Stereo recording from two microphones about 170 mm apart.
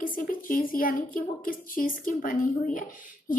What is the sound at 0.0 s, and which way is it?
A woman's voice, 55° left (ahead or behind).